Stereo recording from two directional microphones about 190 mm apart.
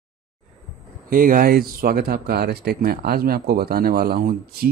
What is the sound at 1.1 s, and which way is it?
Speech, 45° right (ahead or behind).